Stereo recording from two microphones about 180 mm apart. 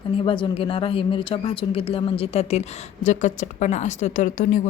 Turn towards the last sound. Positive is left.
turn(degrees=45)  # may be behind; listen again after turning